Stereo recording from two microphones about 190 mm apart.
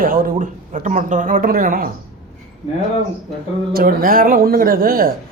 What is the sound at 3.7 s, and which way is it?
A man's voice, 50° right (ahead or behind).